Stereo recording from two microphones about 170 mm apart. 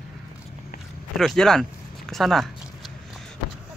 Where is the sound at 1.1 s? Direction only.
Centre (ahead or behind).